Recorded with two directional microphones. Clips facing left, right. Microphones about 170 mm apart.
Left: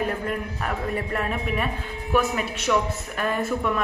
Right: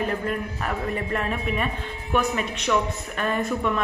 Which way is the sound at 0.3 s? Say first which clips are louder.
Even; centre (ahead or behind).